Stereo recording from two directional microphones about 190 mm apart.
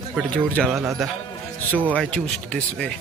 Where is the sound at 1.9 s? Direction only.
5° left (ahead or behind).